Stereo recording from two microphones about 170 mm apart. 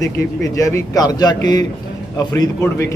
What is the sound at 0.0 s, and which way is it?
A man's voice, 20° left (ahead or behind).